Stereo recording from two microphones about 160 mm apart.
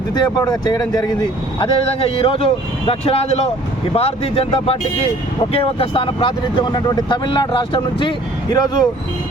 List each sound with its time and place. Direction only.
0.1 s speech: 25° left (ahead or behind)